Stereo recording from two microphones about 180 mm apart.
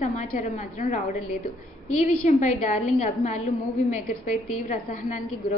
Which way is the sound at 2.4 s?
40° left (ahead or behind).